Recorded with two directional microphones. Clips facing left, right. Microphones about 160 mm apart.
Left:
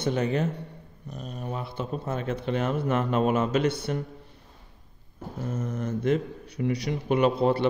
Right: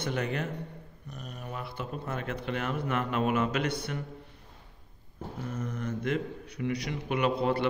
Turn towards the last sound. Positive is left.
turn(degrees=30)  # may be behind; listen again after turning